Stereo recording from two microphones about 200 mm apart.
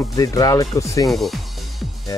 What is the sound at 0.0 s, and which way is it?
Music, 15° left (ahead or behind).